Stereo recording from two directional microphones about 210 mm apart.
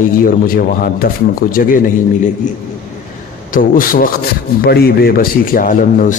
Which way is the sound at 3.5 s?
40° left (ahead or behind).